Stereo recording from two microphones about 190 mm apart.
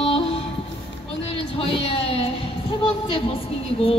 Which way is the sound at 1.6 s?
30° left (ahead or behind).